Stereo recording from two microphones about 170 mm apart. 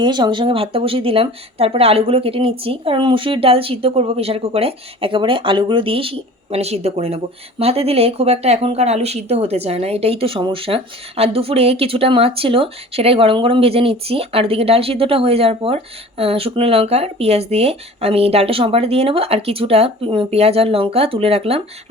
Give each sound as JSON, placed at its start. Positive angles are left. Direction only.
{"t": 0.0, "sound": "speech", "side_deg": -25}